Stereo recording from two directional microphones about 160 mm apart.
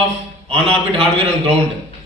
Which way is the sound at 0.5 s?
35° right (ahead or behind).